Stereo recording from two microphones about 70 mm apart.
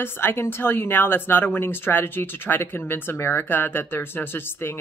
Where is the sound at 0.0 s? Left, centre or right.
Left.